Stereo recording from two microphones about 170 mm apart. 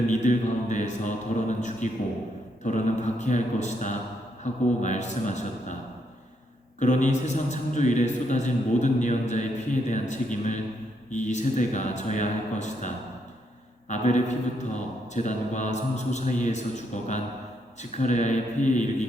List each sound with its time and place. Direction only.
0.1 s mantra: 45° left (ahead or behind)
2.6 s a man's voice: 45° left (ahead or behind)
6.7 s a man's voice: 45° left (ahead or behind)
13.9 s a man's voice: 45° left (ahead or behind)